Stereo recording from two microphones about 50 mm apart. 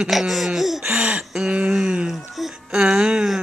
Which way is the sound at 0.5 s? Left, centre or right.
Centre.